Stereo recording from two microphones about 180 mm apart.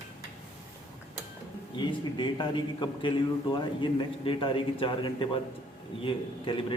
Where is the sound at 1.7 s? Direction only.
25° left (ahead or behind).